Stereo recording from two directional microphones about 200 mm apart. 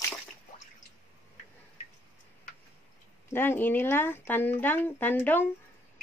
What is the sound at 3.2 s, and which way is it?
Speech, 10° left (ahead or behind).